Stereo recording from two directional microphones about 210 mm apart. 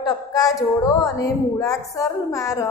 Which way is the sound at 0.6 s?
15° left (ahead or behind).